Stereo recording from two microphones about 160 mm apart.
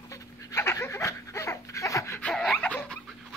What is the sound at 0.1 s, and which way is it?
Dog, 20° left (ahead or behind).